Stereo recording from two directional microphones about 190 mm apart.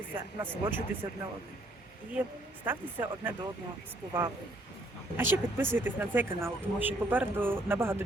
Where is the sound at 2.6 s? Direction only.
10° right (ahead or behind).